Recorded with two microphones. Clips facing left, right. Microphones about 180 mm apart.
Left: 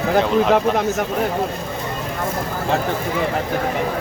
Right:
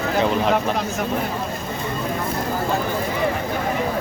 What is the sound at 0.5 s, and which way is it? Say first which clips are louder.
Speech: left 5 dB; 55° left (ahead or behind).